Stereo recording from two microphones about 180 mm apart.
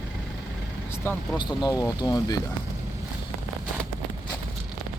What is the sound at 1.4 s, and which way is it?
Speech, 25° left (ahead or behind).